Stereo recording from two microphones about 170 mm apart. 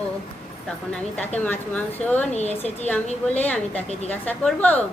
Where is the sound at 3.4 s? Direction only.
5° left (ahead or behind).